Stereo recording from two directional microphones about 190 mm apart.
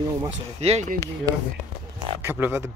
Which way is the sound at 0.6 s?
35° right (ahead or behind).